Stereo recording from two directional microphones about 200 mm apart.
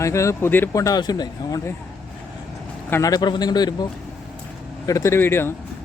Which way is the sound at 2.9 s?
15° left (ahead or behind).